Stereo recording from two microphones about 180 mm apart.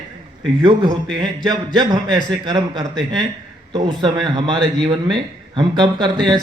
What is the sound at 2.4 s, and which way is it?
A man's voice, 25° right (ahead or behind).